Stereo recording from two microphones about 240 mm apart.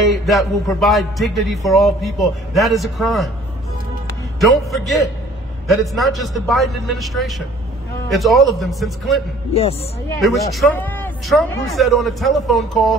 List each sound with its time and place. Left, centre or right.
0.0 s music: centre
4.4 s music: centre
9.5 s speech: left
10.2 s music: centre